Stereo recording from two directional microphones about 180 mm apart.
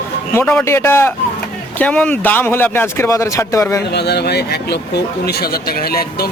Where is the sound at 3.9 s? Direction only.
65° left (ahead or behind).